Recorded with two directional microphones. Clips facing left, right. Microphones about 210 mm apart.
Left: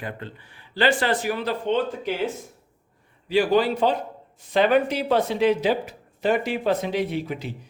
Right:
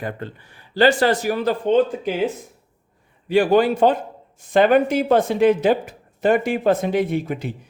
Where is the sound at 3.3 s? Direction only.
50° right (ahead or behind).